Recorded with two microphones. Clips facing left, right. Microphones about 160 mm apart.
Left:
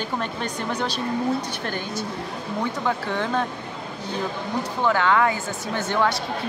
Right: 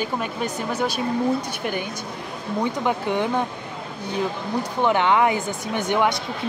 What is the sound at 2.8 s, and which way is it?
Speech, 15° right (ahead or behind).